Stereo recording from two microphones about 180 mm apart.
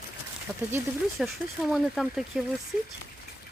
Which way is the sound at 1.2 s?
Centre (ahead or behind).